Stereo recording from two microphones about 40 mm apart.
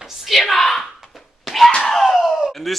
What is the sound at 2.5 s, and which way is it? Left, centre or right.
Speech, centre.